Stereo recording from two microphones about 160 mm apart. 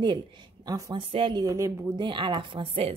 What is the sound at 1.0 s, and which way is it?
Speech, 35° right (ahead or behind).